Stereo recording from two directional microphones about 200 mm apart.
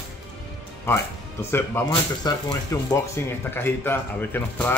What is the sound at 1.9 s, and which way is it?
Speech, 20° left (ahead or behind).